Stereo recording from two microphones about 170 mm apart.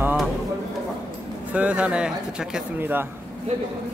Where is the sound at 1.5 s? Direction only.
10° right (ahead or behind).